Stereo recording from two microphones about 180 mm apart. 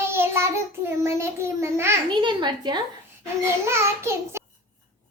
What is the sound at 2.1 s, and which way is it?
Speech, 25° right (ahead or behind).